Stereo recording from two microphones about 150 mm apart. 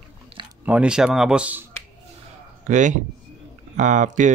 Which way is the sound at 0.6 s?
10° right (ahead or behind).